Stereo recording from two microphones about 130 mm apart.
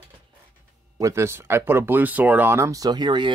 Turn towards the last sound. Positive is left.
turn(degrees=-35)  # may be behind; listen again after turning